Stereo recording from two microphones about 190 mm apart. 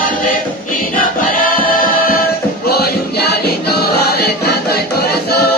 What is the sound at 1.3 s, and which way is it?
Choir, 50° left (ahead or behind).